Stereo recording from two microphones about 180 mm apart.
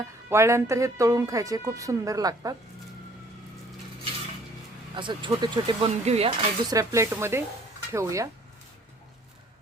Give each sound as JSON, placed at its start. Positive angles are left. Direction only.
{"t": 0.3, "sound": "a woman's voice", "side_deg": -15}
{"t": 4.9, "sound": "a woman's voice", "side_deg": -25}